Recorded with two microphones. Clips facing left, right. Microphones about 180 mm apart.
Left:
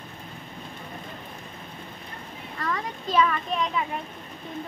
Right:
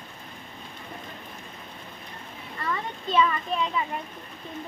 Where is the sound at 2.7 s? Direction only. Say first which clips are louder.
Even; centre (ahead or behind).